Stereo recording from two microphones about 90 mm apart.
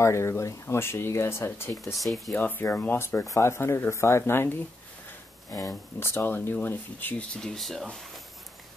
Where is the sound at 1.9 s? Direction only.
Centre (ahead or behind).